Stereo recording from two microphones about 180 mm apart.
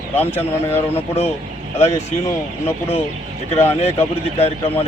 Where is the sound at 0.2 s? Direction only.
10° left (ahead or behind).